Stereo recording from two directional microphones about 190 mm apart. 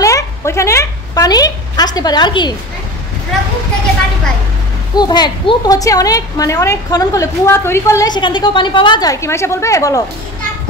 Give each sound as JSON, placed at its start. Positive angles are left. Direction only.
{"t": 0.0, "sound": "a woman's voice", "side_deg": 15}
{"t": 4.9, "sound": "a woman's voice", "side_deg": 20}